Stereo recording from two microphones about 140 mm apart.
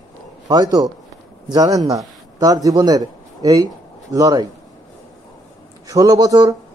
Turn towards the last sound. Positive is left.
turn(degrees=-25)  # may be behind; listen again after turning